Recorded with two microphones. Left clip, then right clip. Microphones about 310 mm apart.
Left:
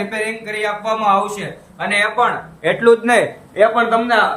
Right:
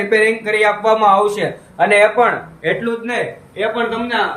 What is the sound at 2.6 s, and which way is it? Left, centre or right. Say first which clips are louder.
A man's voice: left 6 dB; centre.